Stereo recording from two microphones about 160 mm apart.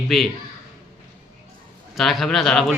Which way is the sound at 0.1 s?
Centre (ahead or behind).